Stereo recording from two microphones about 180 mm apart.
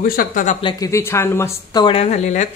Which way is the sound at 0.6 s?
25° left (ahead or behind).